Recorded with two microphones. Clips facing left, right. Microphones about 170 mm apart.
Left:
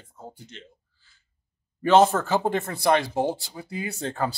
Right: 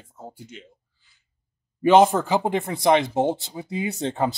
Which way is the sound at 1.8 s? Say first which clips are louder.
Right 2 dB; 15° right (ahead or behind).